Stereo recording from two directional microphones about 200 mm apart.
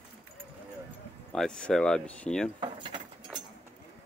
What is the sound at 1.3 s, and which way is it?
Speech, 5° left (ahead or behind).